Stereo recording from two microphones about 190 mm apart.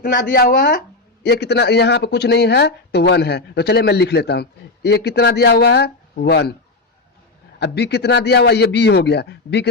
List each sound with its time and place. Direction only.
0.0 s speech: 50° left (ahead or behind)
7.6 s speech: 60° left (ahead or behind)